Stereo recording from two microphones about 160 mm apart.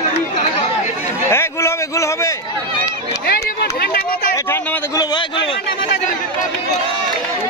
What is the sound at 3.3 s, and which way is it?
Run, 80° left.